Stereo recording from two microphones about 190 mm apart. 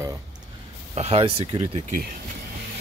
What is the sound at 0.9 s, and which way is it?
Speech, 30° right (ahead or behind).